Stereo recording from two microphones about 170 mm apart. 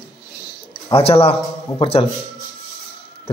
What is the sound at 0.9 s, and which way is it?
Speech, 35° left (ahead or behind).